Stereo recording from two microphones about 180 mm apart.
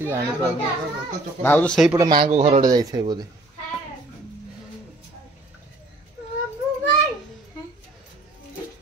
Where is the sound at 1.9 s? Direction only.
20° right (ahead or behind).